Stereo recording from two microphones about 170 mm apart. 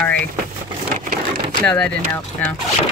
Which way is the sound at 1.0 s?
50° right (ahead or behind).